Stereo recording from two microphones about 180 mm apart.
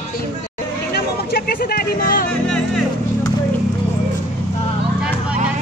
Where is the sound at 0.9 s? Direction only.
60° left (ahead or behind).